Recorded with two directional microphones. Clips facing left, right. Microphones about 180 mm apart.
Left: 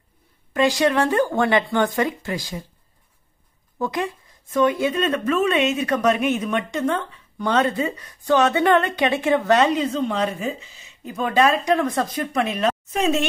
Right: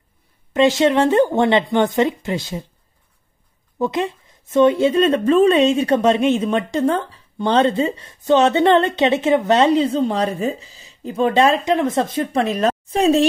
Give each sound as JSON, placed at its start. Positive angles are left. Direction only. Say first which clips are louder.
{"t": 0.5, "sound": "speech", "louder": "right 4 dB", "side_deg": -25}
{"t": 3.7, "sound": "speech", "louder": "right 4 dB", "side_deg": -20}